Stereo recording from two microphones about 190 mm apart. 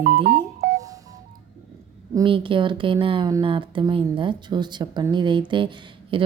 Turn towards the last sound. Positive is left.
turn(degrees=-25)  # may be behind; listen again after turning